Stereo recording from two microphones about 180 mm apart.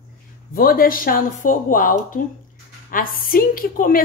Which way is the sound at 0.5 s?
55° left (ahead or behind).